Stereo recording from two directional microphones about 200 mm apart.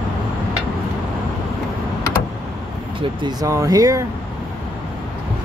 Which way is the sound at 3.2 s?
15° right (ahead or behind).